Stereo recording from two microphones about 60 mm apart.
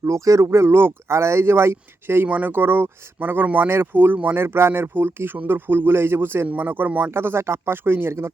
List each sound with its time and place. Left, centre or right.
0.0 s speech: right
2.2 s speech: right
7.1 s speech: right